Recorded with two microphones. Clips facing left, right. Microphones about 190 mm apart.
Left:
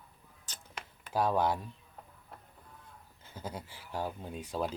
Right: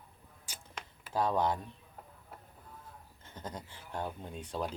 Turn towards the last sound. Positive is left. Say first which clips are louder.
# left 2 dB
turn(degrees=10)  # may be behind; listen again after turning